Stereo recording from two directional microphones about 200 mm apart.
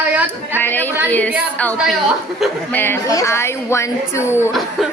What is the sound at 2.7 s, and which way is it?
A woman's voice, 10° left (ahead or behind).